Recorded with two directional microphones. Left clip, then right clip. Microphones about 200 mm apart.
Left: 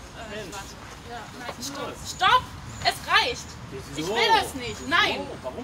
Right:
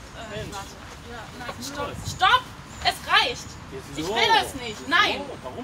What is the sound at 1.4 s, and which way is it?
A woman's voice, 15° left (ahead or behind).